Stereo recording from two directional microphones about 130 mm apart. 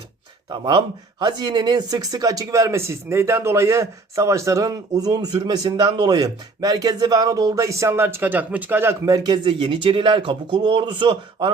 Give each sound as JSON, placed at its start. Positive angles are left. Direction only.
{"t": 0.5, "sound": "speech", "side_deg": -35}